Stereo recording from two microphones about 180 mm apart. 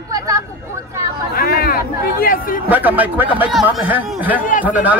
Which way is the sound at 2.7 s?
10° right (ahead or behind).